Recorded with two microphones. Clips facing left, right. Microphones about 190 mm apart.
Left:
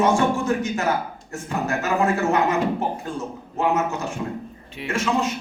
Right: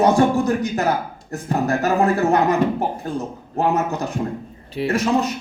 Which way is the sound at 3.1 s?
35° right (ahead or behind).